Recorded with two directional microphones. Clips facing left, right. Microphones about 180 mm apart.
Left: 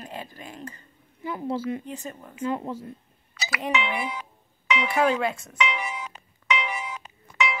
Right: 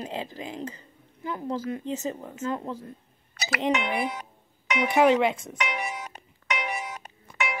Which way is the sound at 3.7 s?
50° right (ahead or behind).